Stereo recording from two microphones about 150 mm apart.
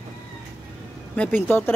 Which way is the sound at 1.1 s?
10° left (ahead or behind).